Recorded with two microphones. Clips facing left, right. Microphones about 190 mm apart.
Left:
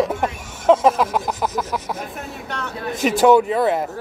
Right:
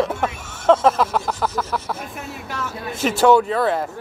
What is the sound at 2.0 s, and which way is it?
Speech, centre (ahead or behind).